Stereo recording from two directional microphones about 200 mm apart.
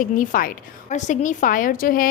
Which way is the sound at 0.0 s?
40° left (ahead or behind).